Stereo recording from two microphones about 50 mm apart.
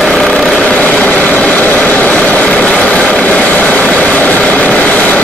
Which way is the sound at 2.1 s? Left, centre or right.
Left.